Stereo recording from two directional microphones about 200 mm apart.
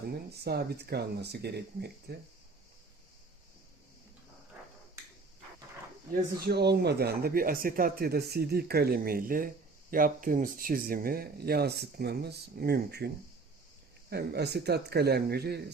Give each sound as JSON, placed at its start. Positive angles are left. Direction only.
{"t": 0.1, "sound": "speech", "side_deg": -55}
{"t": 6.4, "sound": "speech", "side_deg": -55}
{"t": 14.1, "sound": "speech", "side_deg": -55}